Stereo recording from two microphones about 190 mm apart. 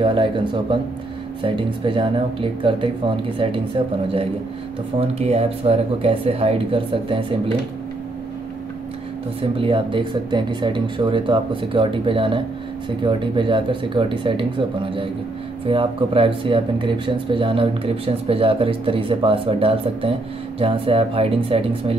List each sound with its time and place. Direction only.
0.0 s speech: 25° right (ahead or behind)
9.4 s speech: 30° right (ahead or behind)